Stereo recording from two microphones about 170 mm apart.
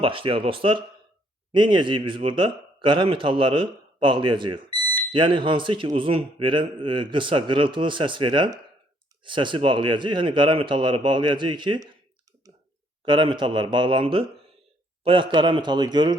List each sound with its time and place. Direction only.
0.0 s a man's voice: 30° right (ahead or behind)
13.1 s a man's voice: 30° right (ahead or behind)